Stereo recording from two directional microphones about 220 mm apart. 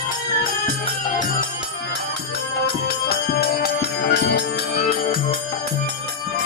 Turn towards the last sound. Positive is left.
turn(degrees=50)  # may be behind; listen again after turning